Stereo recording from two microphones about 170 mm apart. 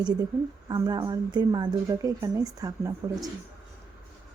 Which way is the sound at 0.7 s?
25° right (ahead or behind).